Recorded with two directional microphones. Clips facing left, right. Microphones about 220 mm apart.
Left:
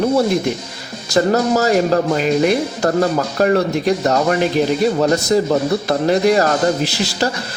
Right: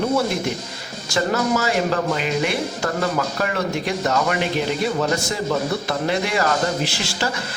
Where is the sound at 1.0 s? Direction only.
40° left (ahead or behind).